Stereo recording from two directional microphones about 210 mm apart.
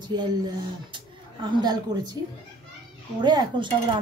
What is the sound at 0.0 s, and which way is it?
Speech, 20° right (ahead or behind).